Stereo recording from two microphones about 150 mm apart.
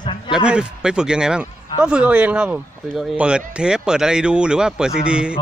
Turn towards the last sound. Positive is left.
turn(degrees=-5)  # may be behind; listen again after turning